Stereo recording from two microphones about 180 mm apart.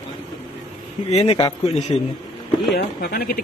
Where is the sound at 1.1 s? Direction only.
35° left (ahead or behind).